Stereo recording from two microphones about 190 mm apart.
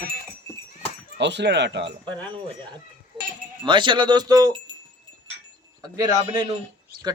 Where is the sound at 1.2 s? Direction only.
65° right (ahead or behind).